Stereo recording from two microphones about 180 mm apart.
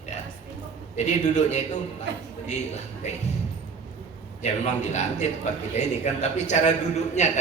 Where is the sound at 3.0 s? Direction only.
40° left (ahead or behind).